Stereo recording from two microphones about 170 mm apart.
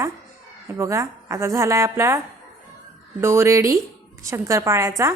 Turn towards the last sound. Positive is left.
turn(degrees=-15)  # may be behind; listen again after turning